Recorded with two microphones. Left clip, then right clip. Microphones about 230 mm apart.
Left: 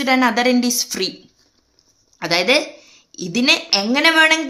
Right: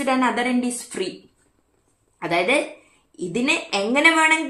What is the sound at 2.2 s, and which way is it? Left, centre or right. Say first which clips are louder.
A woman's voice: left 4 dB; left.